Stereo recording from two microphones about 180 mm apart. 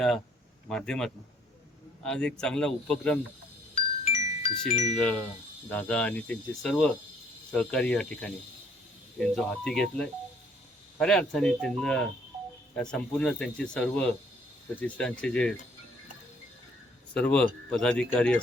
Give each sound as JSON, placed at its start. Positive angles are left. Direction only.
{"t": 0.7, "sound": "speech", "side_deg": 5}
{"t": 3.8, "sound": "glockenspiel", "side_deg": 40}
{"t": 4.7, "sound": "chime", "side_deg": 40}
{"t": 5.7, "sound": "speech", "side_deg": 5}
{"t": 17.2, "sound": "speech", "side_deg": 5}